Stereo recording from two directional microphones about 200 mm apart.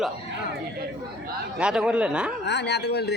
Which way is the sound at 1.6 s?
5° right (ahead or behind).